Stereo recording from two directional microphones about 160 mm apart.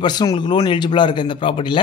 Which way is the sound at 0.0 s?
25° left (ahead or behind).